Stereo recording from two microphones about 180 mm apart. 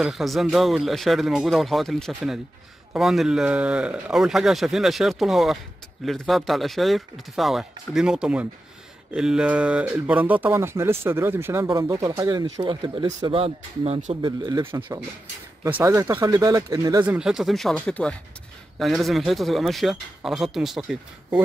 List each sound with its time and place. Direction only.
0.0 s a man's voice: centre (ahead or behind); by 14.1 s 35° right (ahead or behind)
14.2 s speech: 25° right (ahead or behind)
17.0 s a man's voice: 5° right (ahead or behind)